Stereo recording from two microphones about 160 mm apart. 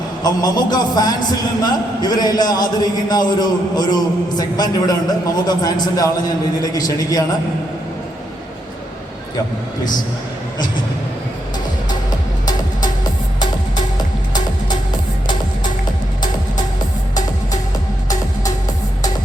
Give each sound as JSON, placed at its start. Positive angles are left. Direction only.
{"t": 0.2, "sound": "a man's voice", "side_deg": 25}